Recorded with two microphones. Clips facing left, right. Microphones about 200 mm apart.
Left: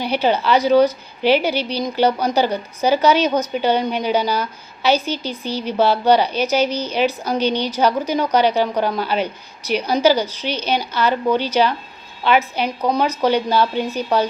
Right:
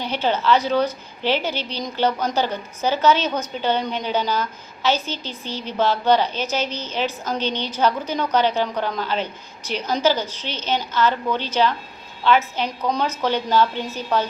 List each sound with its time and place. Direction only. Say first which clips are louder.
0.0 s a woman's voice: left 4 dB; 10° left (ahead or behind)